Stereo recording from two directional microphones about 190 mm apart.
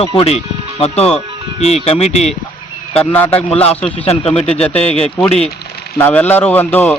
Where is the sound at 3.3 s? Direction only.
30° left (ahead or behind).